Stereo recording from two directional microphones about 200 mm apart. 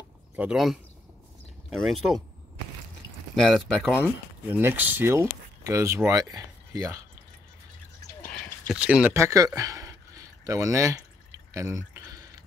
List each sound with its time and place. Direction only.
0.4 s speech: 5° right (ahead or behind)
3.3 s speech: centre (ahead or behind)
4.5 s speech: 10° right (ahead or behind)
8.2 s drip: 45° left (ahead or behind)
8.6 s a sound: 5° right (ahead or behind)